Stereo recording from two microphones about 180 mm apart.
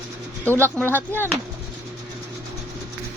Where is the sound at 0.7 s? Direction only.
10° left (ahead or behind).